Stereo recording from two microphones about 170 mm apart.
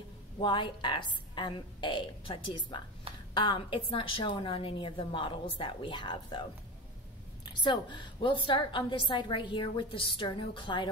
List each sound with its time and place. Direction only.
0.4 s a woman's voice: 30° left (ahead or behind)
7.4 s a woman's voice: 25° left (ahead or behind)